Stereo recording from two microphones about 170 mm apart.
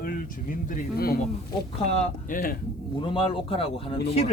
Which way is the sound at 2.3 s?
60° left (ahead or behind).